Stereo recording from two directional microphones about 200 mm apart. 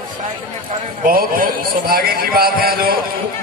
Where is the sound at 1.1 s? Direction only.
45° right (ahead or behind).